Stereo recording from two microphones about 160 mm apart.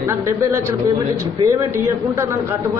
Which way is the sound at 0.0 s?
15° right (ahead or behind).